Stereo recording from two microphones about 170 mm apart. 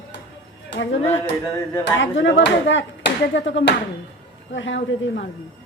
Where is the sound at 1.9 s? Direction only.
90° left.